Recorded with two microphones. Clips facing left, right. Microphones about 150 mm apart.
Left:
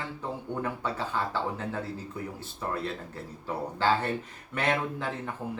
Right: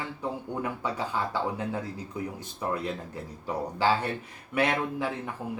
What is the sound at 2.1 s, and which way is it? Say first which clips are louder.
Speech: right 3 dB; 15° right (ahead or behind).